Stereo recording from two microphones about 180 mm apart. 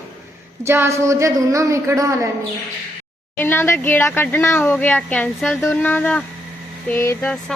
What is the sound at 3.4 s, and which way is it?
Speech, 10° left (ahead or behind).